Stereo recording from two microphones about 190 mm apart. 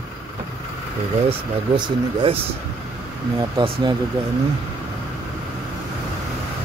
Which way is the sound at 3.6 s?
25° right (ahead or behind).